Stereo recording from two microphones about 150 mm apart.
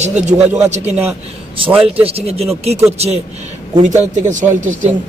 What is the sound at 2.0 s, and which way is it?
Speech, 40° right (ahead or behind).